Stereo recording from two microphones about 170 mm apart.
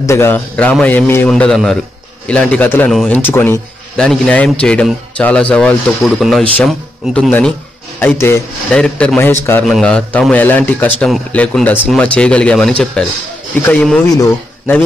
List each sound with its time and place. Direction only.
0.0 s speech: 15° left (ahead or behind)
1.3 s a man's voice: 5° left (ahead or behind)
14.1 s speech: 20° left (ahead or behind)